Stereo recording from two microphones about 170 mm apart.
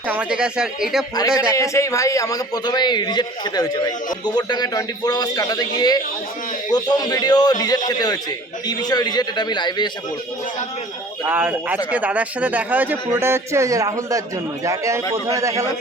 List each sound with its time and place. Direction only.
0.1 s speech: 5° right (ahead or behind)
1.5 s a man's voice: 15° left (ahead or behind)
11.3 s a man's voice: 10° right (ahead or behind)